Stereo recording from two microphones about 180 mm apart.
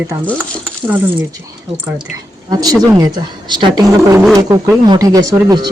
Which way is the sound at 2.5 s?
20° right (ahead or behind).